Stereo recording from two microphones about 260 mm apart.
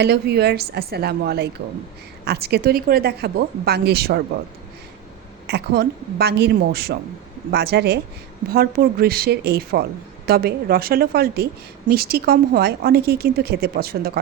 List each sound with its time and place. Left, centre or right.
0.0 s a woman's voice: right
5.5 s a woman's voice: right